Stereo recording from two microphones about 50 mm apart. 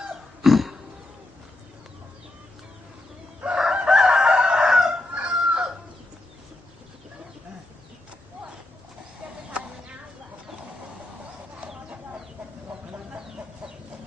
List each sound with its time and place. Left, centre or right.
0.1 s cat: centre
3.6 s crowing: centre
5.1 s chicken: right
9.5 s a sound: right